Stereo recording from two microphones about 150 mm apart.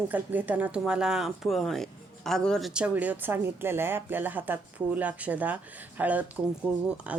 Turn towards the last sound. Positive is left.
turn(degrees=-10)  # may be behind; listen again after turning